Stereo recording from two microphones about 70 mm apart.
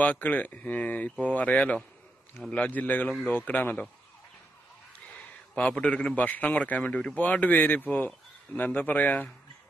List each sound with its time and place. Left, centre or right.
0.0 s a man's voice: left
5.8 s a man's voice: centre